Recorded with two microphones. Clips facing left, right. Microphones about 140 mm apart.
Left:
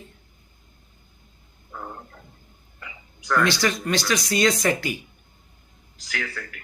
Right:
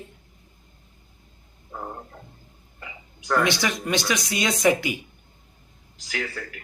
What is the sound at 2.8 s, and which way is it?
Speech, 25° right (ahead or behind).